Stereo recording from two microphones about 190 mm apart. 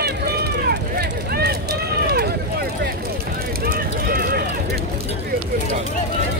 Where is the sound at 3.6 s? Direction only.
50° right (ahead or behind).